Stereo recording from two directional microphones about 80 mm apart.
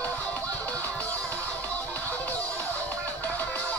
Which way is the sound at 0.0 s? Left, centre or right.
Centre.